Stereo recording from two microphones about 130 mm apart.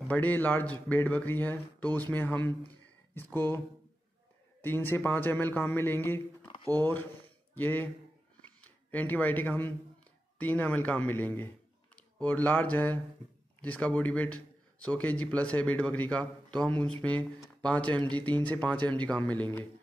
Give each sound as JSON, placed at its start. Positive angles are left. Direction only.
{"t": 0.1, "sound": "speech", "side_deg": 15}
{"t": 7.5, "sound": "a man's voice", "side_deg": 15}